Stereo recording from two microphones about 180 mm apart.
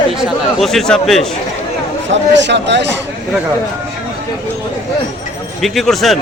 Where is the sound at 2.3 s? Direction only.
80° right.